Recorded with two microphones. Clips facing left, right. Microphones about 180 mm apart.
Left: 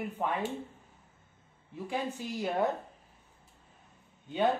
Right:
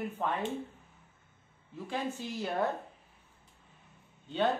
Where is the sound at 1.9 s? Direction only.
15° left (ahead or behind).